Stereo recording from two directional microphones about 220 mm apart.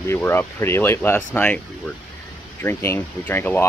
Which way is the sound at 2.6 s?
10° left (ahead or behind).